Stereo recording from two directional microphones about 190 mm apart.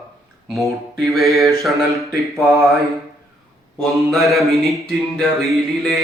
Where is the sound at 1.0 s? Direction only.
Centre (ahead or behind).